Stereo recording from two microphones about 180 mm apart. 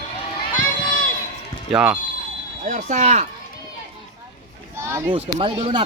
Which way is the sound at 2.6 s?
45° right (ahead or behind).